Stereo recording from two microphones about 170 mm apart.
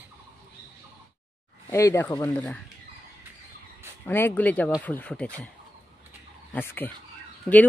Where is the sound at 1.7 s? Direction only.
15° left (ahead or behind).